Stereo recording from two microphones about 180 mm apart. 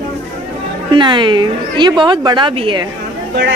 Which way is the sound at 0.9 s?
25° right (ahead or behind).